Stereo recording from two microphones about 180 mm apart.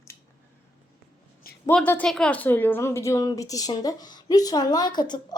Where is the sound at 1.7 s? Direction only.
10° left (ahead or behind).